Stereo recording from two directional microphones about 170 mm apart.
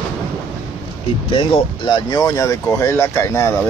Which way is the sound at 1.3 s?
25° left (ahead or behind).